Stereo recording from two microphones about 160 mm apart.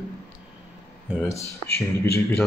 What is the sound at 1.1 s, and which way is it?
Speech, 5° right (ahead or behind).